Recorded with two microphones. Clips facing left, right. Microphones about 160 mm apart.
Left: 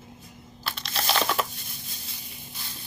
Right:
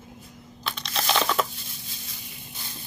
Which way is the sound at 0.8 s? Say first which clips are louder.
Right 2 dB; centre (ahead or behind).